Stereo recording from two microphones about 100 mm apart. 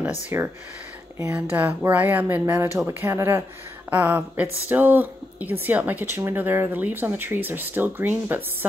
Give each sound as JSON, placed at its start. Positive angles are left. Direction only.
{"t": 0.3, "sound": "speech", "side_deg": -25}
{"t": 1.3, "sound": "speech", "side_deg": -15}